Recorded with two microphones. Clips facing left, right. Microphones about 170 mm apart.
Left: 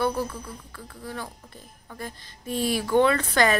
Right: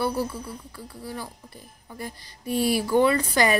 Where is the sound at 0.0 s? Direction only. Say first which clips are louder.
Even; 10° right (ahead or behind).